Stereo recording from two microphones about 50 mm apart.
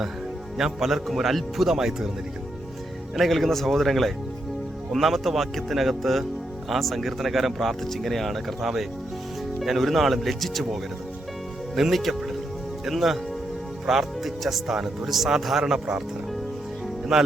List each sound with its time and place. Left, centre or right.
0.5 s speech: centre
3.2 s speech: centre
15.6 s speech: centre
17.1 s speech: centre